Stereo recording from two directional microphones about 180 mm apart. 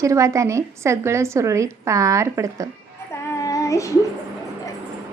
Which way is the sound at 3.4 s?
20° left (ahead or behind).